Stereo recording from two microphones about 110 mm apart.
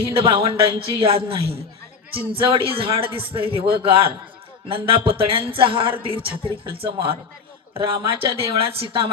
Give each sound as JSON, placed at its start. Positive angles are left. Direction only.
{"t": 0.2, "sound": "a man's voice", "side_deg": -55}